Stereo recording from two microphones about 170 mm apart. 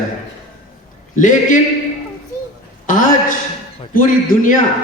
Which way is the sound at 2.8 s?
50° left (ahead or behind).